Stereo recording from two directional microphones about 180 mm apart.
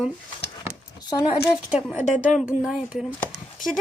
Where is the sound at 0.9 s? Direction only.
20° left (ahead or behind).